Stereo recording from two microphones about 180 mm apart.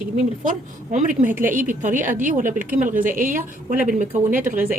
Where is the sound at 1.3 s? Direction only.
50° right (ahead or behind).